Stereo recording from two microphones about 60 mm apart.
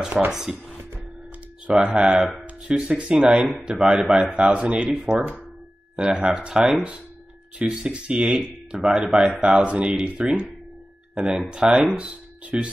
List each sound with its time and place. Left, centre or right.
0.3 s speech: centre
1.7 s speech: centre